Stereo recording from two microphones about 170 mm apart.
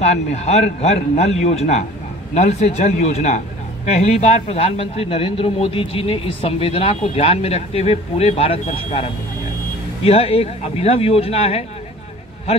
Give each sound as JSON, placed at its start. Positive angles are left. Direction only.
{"t": 0.0, "sound": "a man's voice", "side_deg": 40}